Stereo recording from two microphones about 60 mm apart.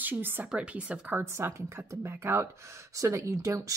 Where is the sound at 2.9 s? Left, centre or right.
Right.